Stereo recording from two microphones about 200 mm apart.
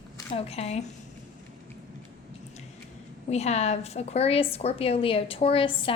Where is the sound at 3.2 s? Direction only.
35° left (ahead or behind).